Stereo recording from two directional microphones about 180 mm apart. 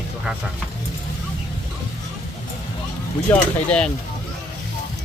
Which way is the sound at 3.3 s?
5° left (ahead or behind).